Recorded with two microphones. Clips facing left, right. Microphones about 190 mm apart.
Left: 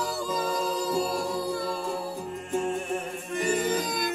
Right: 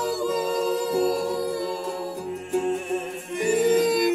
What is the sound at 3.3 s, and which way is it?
Yodeling, 20° right (ahead or behind).